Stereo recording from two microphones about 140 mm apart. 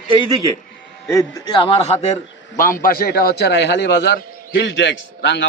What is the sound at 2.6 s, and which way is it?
Speech, 85° left.